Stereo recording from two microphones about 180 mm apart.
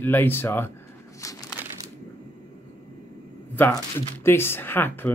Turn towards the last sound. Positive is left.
turn(degrees=10)  # may be behind; listen again after turning